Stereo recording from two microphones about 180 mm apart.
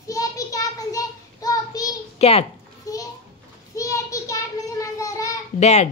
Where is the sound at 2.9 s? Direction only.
20° left (ahead or behind).